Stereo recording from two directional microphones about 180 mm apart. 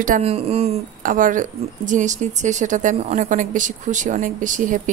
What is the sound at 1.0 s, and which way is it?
Speech, 50° right (ahead or behind).